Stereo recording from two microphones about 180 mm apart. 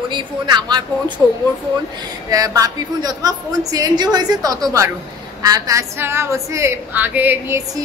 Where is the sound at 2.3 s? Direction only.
20° right (ahead or behind).